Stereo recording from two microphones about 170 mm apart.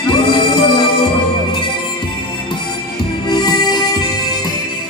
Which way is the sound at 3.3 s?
25° left (ahead or behind).